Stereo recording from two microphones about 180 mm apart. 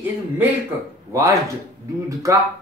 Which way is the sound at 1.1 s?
15° right (ahead or behind).